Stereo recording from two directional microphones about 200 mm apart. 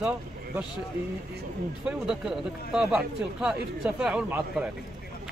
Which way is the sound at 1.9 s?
5° right (ahead or behind).